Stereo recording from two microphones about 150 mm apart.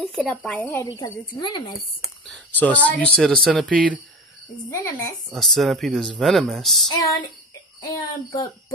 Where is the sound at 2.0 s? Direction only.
Centre (ahead or behind).